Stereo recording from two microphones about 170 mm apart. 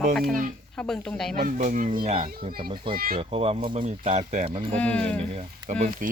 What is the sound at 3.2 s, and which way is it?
Speech, 35° right (ahead or behind).